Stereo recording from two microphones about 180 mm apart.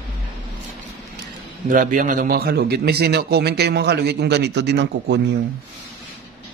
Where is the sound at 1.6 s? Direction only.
50° right (ahead or behind); by 5.3 s 75° right (ahead or behind).